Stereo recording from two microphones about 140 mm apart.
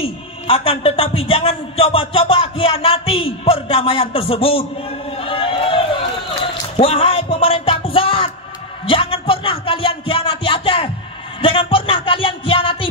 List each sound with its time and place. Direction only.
0.0 s a man's voice: 45° left (ahead or behind)
5.1 s a sound: 40° left (ahead or behind)
6.8 s speech: 45° left (ahead or behind)